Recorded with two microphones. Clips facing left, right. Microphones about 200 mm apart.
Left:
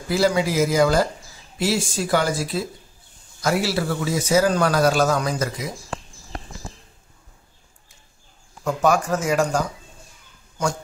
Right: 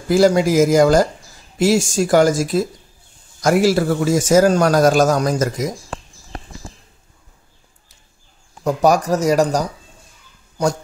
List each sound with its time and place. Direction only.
0.1 s a man's voice: 45° right (ahead or behind)
8.6 s speech: 40° right (ahead or behind)